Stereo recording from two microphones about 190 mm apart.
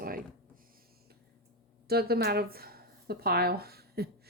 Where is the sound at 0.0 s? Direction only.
50° right (ahead or behind).